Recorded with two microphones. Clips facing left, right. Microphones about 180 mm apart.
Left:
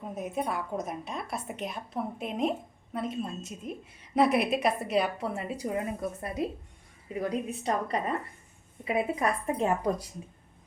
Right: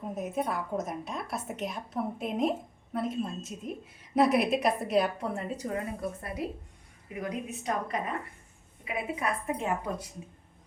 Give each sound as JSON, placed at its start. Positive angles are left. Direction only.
{"t": 0.1, "sound": "a woman's voice", "side_deg": 0}